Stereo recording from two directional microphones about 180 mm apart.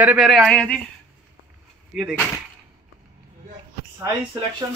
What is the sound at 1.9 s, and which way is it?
Speech, 5° right (ahead or behind).